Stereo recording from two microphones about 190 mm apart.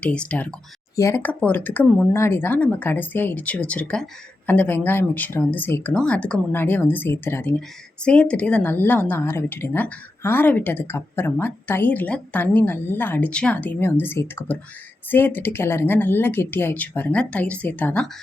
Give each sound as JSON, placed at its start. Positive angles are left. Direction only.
{"t": 0.0, "sound": "speech", "side_deg": 5}